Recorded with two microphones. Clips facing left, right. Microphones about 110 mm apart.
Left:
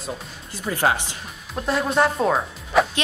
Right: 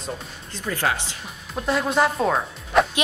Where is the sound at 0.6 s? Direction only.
25° left (ahead or behind).